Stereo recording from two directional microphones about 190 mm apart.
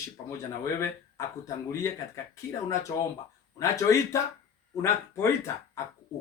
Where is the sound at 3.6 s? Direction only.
15° left (ahead or behind).